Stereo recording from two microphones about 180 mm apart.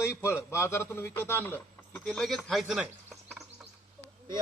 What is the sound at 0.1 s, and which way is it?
A man's voice, 15° left (ahead or behind).